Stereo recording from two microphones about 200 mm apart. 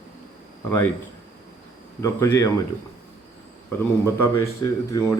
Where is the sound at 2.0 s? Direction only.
15° left (ahead or behind).